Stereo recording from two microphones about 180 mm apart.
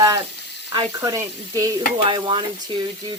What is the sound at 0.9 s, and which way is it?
Frying, 15° right (ahead or behind).